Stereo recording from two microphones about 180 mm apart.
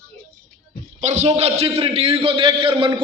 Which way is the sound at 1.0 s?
40° right (ahead or behind).